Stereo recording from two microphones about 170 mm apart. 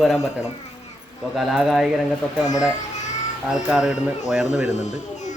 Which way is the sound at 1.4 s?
Centre (ahead or behind).